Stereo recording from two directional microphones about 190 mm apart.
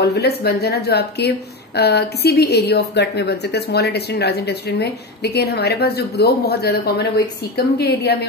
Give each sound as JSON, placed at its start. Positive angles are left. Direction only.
{"t": 0.0, "sound": "a woman's voice", "side_deg": 60}